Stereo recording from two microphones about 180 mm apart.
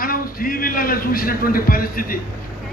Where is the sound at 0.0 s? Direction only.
50° left (ahead or behind).